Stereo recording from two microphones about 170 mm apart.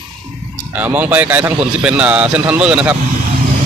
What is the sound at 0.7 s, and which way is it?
Speech, 10° right (ahead or behind).